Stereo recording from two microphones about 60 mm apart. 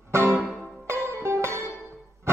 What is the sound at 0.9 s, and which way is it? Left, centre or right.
Music, right.